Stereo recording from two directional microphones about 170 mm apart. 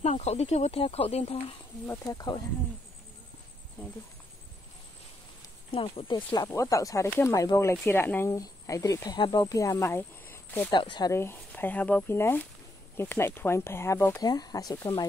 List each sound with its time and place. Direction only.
0.0 s speech: 40° left (ahead or behind)
1.9 s speech: 20° left (ahead or behind)
5.7 s speech: 30° left (ahead or behind); by 10.7 s 10° left (ahead or behind)
10.7 s speech: 25° left (ahead or behind)
14.2 s speech: 25° left (ahead or behind)